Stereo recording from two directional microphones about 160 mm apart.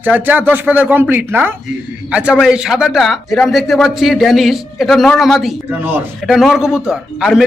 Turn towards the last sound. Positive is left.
turn(degrees=-5)  # may be behind; listen again after turning